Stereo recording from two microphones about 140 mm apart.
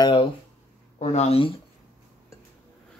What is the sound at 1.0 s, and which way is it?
Speech, 45° left (ahead or behind).